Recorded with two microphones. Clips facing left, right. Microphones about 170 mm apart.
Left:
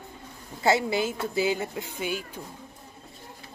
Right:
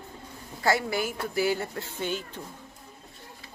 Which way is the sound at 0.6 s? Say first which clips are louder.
Left 3 dB; 20° left (ahead or behind).